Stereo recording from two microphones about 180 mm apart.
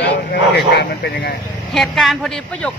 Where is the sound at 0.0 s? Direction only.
65° left (ahead or behind).